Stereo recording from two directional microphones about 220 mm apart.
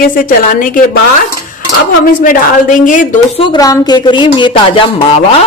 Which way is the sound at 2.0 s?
35° left (ahead or behind).